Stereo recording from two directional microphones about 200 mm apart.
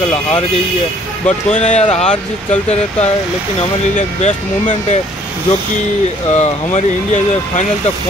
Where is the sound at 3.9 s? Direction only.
40° left (ahead or behind).